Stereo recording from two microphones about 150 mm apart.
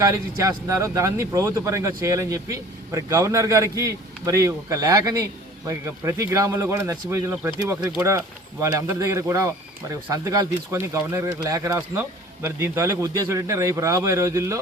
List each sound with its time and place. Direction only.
0.0 s speech: 20° right (ahead or behind)